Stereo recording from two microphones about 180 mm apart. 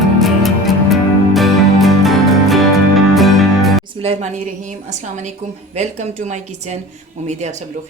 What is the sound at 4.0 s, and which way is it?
Speech, 35° right (ahead or behind).